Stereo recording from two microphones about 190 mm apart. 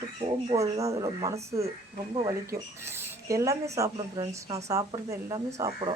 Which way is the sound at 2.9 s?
15° right (ahead or behind).